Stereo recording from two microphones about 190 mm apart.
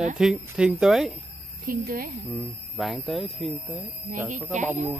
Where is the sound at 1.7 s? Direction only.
50° right (ahead or behind).